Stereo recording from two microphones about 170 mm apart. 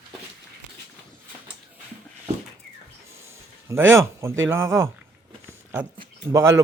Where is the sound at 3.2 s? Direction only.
15° right (ahead or behind).